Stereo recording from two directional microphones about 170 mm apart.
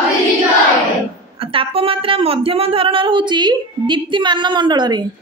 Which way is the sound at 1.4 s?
30° right (ahead or behind).